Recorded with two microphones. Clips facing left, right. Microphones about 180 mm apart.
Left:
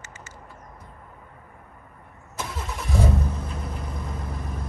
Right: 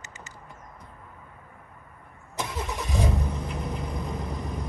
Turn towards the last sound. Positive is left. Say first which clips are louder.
# right 1 dB
turn(degrees=-15)  # may be behind; listen again after turning